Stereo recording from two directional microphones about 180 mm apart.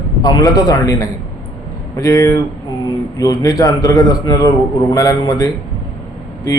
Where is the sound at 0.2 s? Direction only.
20° left (ahead or behind).